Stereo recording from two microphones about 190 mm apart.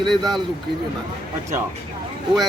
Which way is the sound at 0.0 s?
Centre (ahead or behind).